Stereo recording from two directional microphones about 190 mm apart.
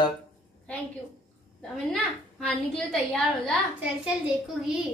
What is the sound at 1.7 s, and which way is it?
A woman's voice, 5° left (ahead or behind).